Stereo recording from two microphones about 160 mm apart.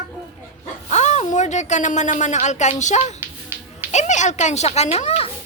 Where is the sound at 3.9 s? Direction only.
50° left (ahead or behind).